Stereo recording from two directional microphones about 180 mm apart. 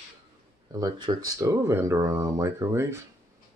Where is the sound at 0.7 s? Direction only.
20° right (ahead or behind).